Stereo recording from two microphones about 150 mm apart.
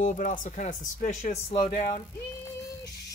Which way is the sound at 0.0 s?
60° left (ahead or behind).